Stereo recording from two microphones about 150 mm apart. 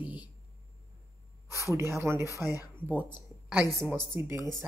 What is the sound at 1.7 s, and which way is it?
Speech, 20° right (ahead or behind).